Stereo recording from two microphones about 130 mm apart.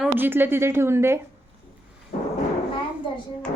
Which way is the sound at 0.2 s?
15° right (ahead or behind).